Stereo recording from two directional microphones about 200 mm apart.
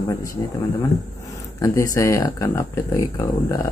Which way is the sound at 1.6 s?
15° left (ahead or behind).